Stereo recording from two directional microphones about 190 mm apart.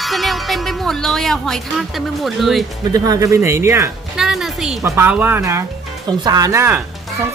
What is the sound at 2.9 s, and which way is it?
Speech, 20° right (ahead or behind).